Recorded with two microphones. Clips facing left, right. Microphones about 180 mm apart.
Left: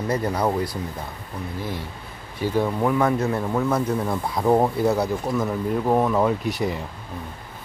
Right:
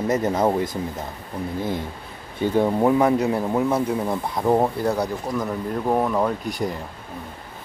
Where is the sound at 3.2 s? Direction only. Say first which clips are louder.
Right 2 dB; 15° right (ahead or behind); by 6.8 s 5° left (ahead or behind).